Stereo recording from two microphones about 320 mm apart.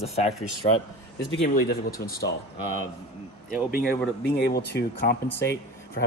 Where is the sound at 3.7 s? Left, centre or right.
Left.